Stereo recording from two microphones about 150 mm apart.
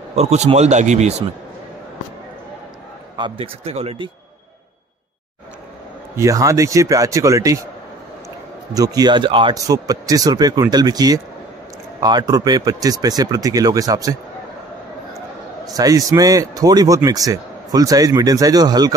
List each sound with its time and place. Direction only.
0.1 s speech: 45° right (ahead or behind)
3.2 s speech: 35° right (ahead or behind)
6.1 s a man's voice: 20° right (ahead or behind)
8.7 s a man's voice: 25° right (ahead or behind)
15.7 s a man's voice: 25° right (ahead or behind)